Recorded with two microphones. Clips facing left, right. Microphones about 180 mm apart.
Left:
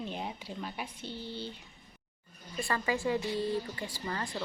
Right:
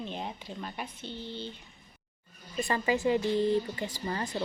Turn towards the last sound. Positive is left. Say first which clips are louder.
# right 3 dB
turn(degrees=-20)  # may be behind; listen again after turning